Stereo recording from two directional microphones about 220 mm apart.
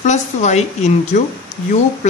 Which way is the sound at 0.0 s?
30° left (ahead or behind).